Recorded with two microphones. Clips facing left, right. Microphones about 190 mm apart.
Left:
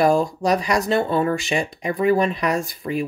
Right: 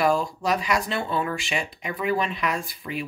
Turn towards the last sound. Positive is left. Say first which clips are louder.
# left 7 dB
turn(degrees=45)  # may be behind; listen again after turning